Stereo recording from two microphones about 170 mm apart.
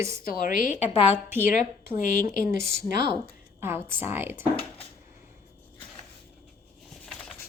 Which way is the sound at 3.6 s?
15° right (ahead or behind).